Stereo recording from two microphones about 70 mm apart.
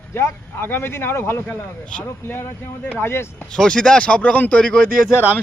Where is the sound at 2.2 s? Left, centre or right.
Left.